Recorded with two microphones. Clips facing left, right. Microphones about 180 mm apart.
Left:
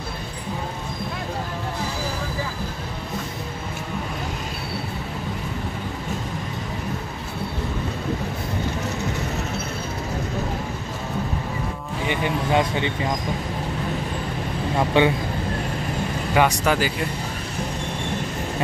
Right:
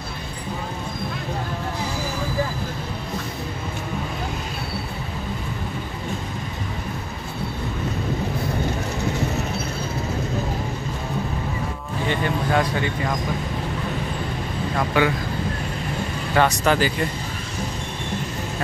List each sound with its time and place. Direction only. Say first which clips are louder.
12.1 s speech: even; 15° left (ahead or behind)
14.8 s speech: left 2 dB; 25° left (ahead or behind)
16.3 s speech: right 1 dB; 10° left (ahead or behind)